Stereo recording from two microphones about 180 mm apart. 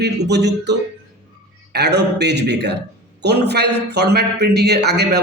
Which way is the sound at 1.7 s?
65° right (ahead or behind).